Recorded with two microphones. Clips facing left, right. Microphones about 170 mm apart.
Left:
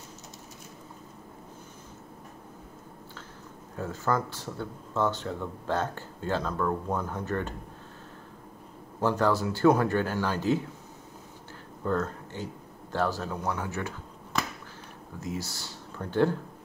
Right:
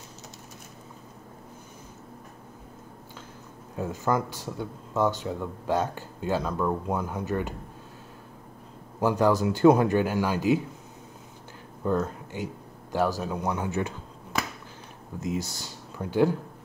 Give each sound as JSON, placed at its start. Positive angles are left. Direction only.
{"t": 3.7, "sound": "speech", "side_deg": -15}
{"t": 9.0, "sound": "speech", "side_deg": -15}
{"t": 11.8, "sound": "speech", "side_deg": -15}
{"t": 15.1, "sound": "speech", "side_deg": -20}